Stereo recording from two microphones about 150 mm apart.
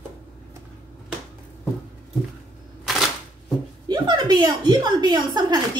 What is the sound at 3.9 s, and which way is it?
A woman's voice, 30° right (ahead or behind).